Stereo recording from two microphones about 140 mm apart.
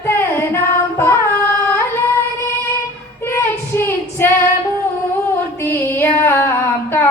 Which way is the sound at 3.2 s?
15° left (ahead or behind).